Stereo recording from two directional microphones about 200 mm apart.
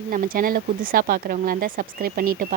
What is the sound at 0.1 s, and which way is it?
Speech, 45° right (ahead or behind).